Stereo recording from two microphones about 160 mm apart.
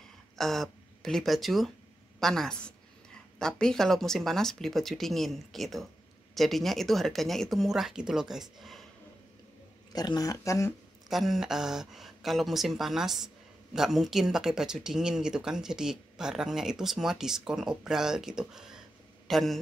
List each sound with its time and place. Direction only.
0.4 s speech: centre (ahead or behind)
9.9 s speech: 25° left (ahead or behind)
11.1 s a man's voice: centre (ahead or behind)